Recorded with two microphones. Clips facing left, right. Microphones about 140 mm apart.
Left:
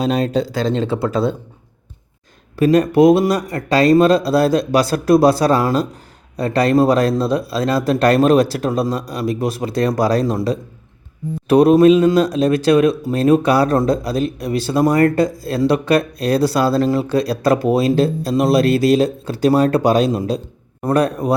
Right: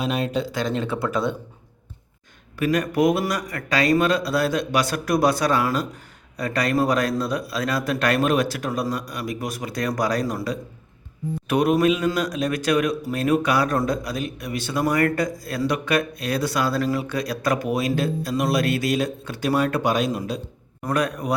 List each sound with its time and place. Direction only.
0.0 s speech: 35° left (ahead or behind)
2.6 s speech: 30° left (ahead or behind)